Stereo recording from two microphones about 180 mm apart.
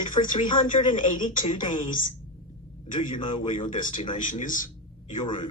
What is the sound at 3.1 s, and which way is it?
A man's voice, 45° left (ahead or behind).